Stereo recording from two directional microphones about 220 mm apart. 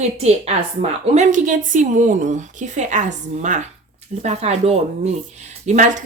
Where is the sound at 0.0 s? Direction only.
30° right (ahead or behind).